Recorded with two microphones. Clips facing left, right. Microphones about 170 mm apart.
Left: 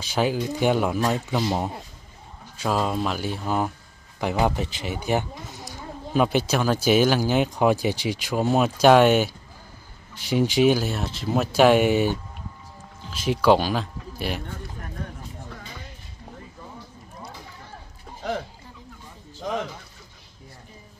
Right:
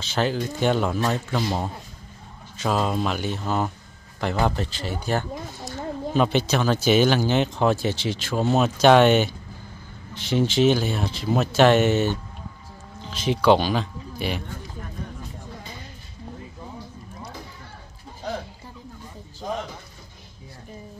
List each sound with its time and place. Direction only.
0.0 s speech: 10° left (ahead or behind)